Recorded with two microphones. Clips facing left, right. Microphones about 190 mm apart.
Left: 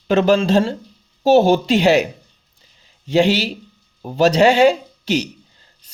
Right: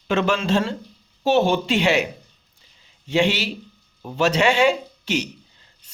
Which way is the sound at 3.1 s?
35° left (ahead or behind).